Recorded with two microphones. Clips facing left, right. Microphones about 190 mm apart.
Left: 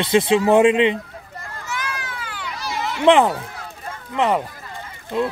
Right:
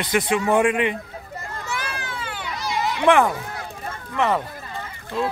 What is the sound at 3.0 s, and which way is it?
Speech, 20° left (ahead or behind).